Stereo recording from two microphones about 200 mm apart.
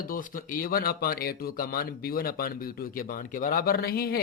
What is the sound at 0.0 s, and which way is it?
Speech, 45° left (ahead or behind).